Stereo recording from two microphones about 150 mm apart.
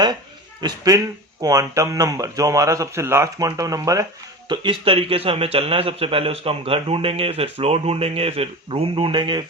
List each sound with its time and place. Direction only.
0.6 s speech: 25° right (ahead or behind)
4.4 s a man's voice: 35° right (ahead or behind)